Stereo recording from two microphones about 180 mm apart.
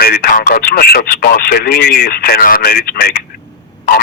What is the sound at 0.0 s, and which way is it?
Speech, 60° left (ahead or behind).